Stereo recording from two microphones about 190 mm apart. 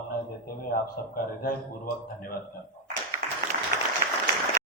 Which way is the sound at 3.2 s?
50° right (ahead or behind).